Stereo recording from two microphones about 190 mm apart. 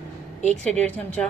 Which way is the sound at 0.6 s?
5° left (ahead or behind).